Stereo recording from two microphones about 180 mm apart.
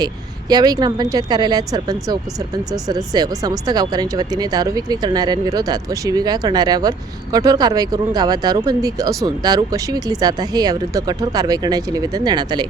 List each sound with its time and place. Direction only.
0.0 s speech: 20° right (ahead or behind)